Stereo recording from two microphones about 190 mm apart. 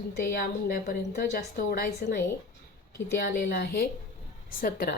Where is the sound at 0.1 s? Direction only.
50° left (ahead or behind).